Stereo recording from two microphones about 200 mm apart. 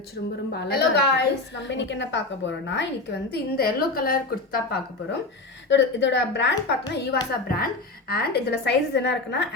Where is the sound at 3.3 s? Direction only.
50° left (ahead or behind).